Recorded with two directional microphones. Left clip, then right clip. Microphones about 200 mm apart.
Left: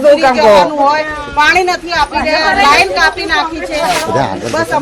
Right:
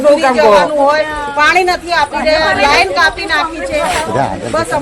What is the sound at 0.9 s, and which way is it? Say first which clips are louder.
Speech: right 1 dB; centre (ahead or behind).